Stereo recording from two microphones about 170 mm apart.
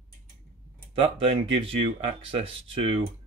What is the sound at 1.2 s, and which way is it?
Speech, 35° right (ahead or behind).